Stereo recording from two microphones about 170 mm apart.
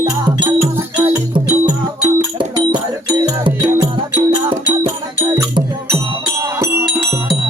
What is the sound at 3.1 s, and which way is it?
Music, 25° right (ahead or behind).